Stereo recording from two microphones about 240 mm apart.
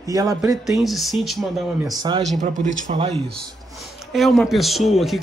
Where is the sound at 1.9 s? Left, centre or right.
Centre.